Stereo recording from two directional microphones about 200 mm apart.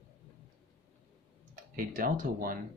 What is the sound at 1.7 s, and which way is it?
Speech, 45° right (ahead or behind).